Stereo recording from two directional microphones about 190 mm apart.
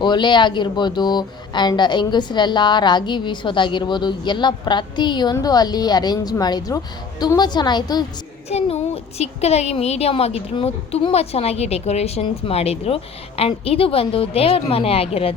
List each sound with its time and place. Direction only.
0.0 s speech: 25° left (ahead or behind)
8.4 s speech: 35° left (ahead or behind)